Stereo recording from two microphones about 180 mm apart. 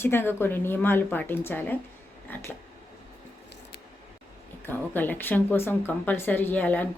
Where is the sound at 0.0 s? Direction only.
10° left (ahead or behind).